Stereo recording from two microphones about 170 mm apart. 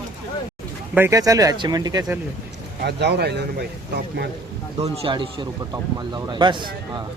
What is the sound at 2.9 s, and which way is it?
Speech, 80° right.